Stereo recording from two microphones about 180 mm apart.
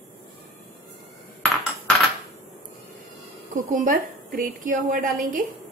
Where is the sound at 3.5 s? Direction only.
45° right (ahead or behind).